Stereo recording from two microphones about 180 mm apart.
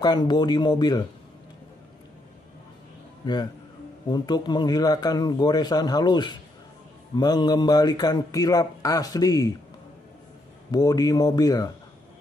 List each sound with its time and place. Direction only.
0.0 s a man's voice: 25° left (ahead or behind)
3.2 s a man's voice: 25° left (ahead or behind)
10.7 s a man's voice: 20° left (ahead or behind)